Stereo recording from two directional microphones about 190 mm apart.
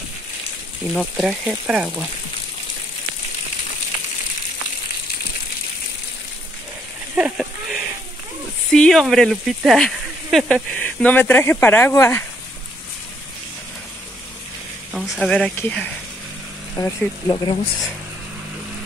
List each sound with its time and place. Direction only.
0.9 s speech: 5° right (ahead or behind)
7.2 s a sound: 5° right (ahead or behind)
8.7 s speech: centre (ahead or behind)
14.9 s speech: centre (ahead or behind)
16.7 s speech: 20° left (ahead or behind)